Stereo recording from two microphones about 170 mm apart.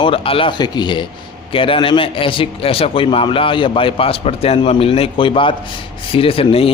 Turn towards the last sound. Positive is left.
turn(degrees=35)  # may be behind; listen again after turning